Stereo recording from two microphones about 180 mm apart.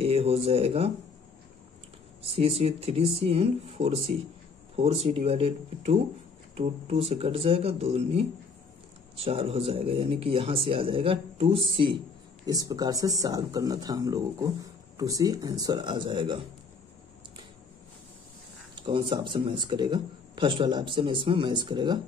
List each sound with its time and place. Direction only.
0.0 s speech: 35° right (ahead or behind)
2.2 s a man's voice: 35° right (ahead or behind)
18.8 s a man's voice: 30° right (ahead or behind)